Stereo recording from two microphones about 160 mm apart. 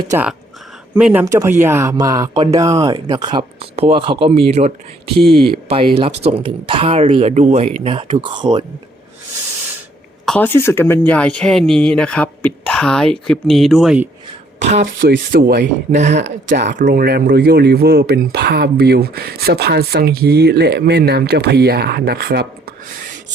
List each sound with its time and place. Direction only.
0.9 s speech: 10° right (ahead or behind)
1.2 s a sound: 20° right (ahead or behind)
2.6 s speech: 30° right (ahead or behind)
5.6 s speech: 40° right (ahead or behind)
10.2 s speech: 10° left (ahead or behind)
15.0 s speech: 70° right (ahead or behind)
15.9 s speech: 50° right (ahead or behind)
16.6 s speech: 75° right (ahead or behind)